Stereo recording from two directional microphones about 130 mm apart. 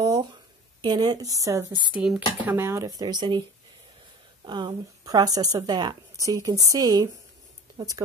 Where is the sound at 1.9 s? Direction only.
10° right (ahead or behind); by 3.4 s 35° right (ahead or behind).